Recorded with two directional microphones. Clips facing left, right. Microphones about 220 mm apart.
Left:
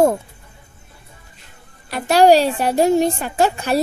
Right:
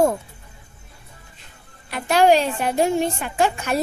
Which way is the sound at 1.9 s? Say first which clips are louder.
Left 4 dB; 35° left (ahead or behind).